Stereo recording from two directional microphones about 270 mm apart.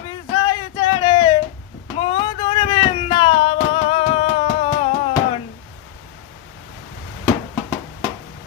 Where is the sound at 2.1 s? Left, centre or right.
Centre.